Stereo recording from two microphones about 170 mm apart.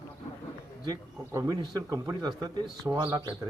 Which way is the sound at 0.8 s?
20° right (ahead or behind).